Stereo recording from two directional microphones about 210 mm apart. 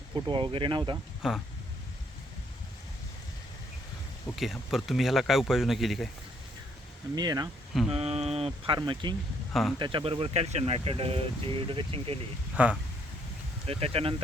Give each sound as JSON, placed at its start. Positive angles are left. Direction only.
{"t": 0.1, "sound": "speech", "side_deg": -25}
{"t": 1.2, "sound": "speech", "side_deg": 0}
{"t": 4.4, "sound": "speech", "side_deg": 0}
{"t": 7.2, "sound": "speech", "side_deg": -20}
{"t": 7.9, "sound": "speech", "side_deg": -30}
{"t": 9.5, "sound": "speech", "side_deg": 0}
{"t": 9.7, "sound": "speech", "side_deg": -20}
{"t": 12.6, "sound": "speech", "side_deg": -5}
{"t": 13.7, "sound": "speech", "side_deg": -30}